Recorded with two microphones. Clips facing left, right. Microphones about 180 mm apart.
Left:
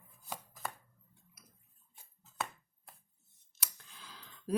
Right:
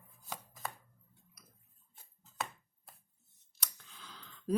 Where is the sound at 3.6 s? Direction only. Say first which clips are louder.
Even; 5° left (ahead or behind).